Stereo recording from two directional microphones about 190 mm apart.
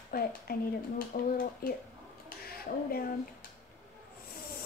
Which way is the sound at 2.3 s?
50° left (ahead or behind).